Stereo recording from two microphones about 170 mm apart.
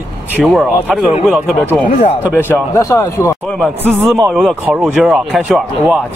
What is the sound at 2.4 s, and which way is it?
Speech, 15° left (ahead or behind).